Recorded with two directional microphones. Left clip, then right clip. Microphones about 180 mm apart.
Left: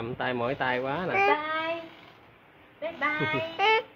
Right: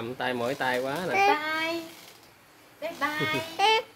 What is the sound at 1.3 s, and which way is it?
Speech, 90° right.